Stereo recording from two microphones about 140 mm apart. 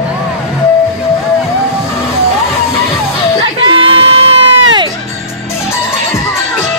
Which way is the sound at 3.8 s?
40° right (ahead or behind).